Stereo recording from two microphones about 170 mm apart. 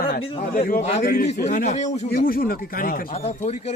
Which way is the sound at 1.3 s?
45° left (ahead or behind).